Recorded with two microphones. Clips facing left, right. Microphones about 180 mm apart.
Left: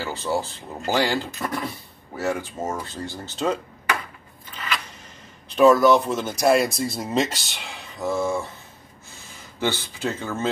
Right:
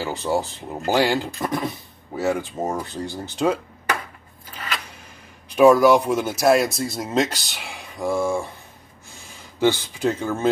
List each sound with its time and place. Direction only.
0.0 s speech: 15° right (ahead or behind)
5.5 s speech: 10° right (ahead or behind)
7.6 s a sound: 10° right (ahead or behind)
9.6 s speech: 15° right (ahead or behind)